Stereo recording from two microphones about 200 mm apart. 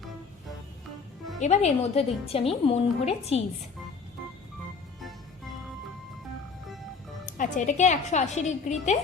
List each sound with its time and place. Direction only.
1.4 s a woman's voice: 35° left (ahead or behind)
7.3 s a woman's voice: 40° left (ahead or behind)